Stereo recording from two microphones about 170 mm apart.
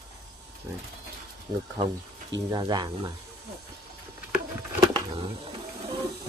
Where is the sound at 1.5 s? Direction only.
20° right (ahead or behind).